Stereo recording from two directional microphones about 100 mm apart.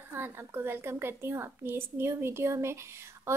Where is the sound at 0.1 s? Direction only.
20° right (ahead or behind).